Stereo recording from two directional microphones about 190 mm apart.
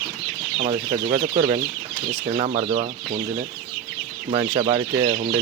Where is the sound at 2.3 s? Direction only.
35° right (ahead or behind).